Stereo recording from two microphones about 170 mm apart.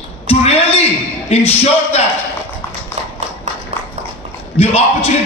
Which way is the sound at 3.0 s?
40° right (ahead or behind).